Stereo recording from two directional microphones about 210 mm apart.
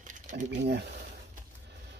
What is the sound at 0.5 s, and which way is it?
Speech, 55° right (ahead or behind).